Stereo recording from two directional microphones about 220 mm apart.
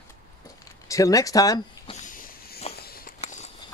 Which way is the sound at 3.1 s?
30° left (ahead or behind).